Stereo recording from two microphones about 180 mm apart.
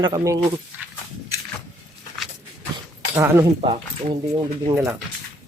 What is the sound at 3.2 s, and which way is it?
Speech, 15° right (ahead or behind).